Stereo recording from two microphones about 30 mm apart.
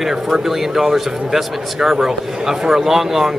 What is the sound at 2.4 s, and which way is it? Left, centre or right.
Speech, centre.